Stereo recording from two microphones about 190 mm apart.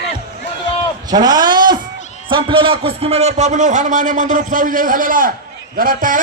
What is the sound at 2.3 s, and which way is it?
A man's voice, 25° right (ahead or behind).